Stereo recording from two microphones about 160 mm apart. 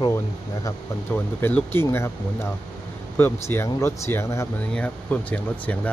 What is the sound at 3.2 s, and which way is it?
Speech, 15° left (ahead or behind).